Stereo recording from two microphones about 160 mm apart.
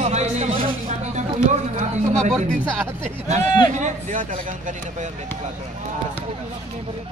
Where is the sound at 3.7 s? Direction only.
50° right (ahead or behind).